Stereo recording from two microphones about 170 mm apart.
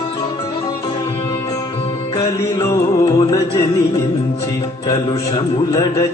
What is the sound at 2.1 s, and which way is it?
Music, 25° left (ahead or behind).